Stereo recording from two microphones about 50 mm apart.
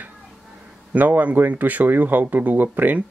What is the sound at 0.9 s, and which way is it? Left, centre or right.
Speech, right.